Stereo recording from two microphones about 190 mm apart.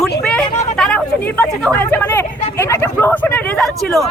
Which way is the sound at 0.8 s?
5° left (ahead or behind).